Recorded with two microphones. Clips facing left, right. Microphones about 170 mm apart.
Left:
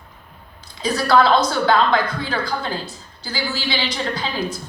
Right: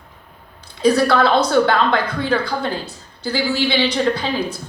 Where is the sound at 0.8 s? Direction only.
60° right (ahead or behind).